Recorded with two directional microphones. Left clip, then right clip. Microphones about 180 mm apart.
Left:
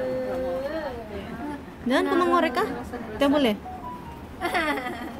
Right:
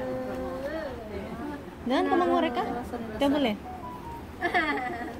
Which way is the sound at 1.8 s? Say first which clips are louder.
Left 2 dB; 35° left (ahead or behind).